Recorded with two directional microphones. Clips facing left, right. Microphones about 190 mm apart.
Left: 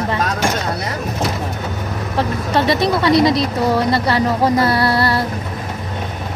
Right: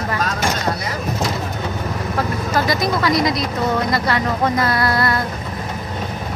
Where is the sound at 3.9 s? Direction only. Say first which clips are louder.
Left 3 dB; 30° left (ahead or behind).